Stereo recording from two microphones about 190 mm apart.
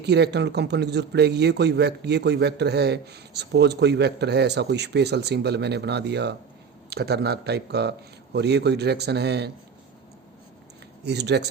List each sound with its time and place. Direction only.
0.0 s a man's voice: 60° right (ahead or behind)
11.0 s a man's voice: 60° right (ahead or behind)